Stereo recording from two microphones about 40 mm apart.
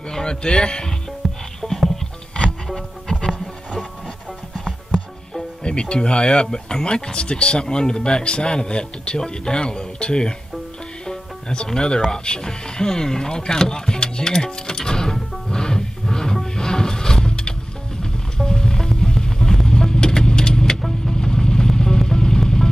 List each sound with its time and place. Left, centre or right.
0.1 s speech: centre
1.2 s music: centre
1.6 s music: left
2.7 s music: centre
5.6 s speech: left
15.5 s music: centre
21.1 s vehicle: centre